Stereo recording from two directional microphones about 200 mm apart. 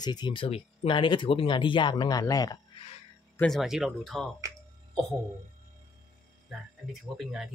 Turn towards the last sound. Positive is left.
turn(degrees=0)  # may be behind; listen again after turning